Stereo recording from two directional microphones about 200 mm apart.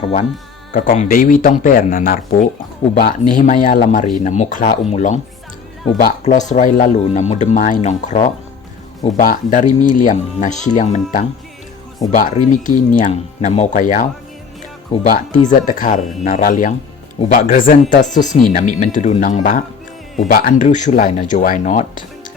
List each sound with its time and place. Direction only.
0.0 s speech: 35° left (ahead or behind)
0.7 s speech: 45° left (ahead or behind)
6.2 s speech: 35° left (ahead or behind)
15.1 s speech: 40° left (ahead or behind)